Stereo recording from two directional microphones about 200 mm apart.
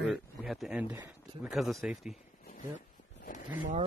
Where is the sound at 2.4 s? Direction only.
40° left (ahead or behind).